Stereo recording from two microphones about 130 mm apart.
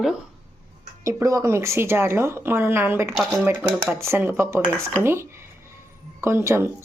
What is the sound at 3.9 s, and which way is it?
Speech, 15° right (ahead or behind).